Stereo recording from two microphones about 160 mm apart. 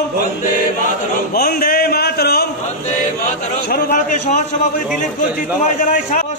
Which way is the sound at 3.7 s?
70° left (ahead or behind).